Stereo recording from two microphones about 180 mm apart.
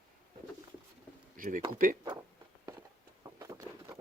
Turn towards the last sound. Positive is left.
turn(degrees=-15)  # may be behind; listen again after turning